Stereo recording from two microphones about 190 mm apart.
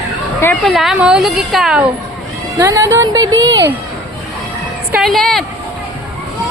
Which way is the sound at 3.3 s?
75° right (ahead or behind).